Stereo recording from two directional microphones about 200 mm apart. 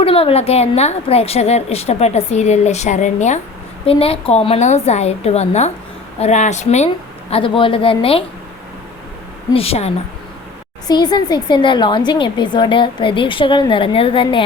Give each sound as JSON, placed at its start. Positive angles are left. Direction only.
{"t": 0.0, "sound": "a woman's voice", "side_deg": 30}
{"t": 9.5, "sound": "a woman's voice", "side_deg": 30}
{"t": 10.8, "sound": "a woman's voice", "side_deg": 20}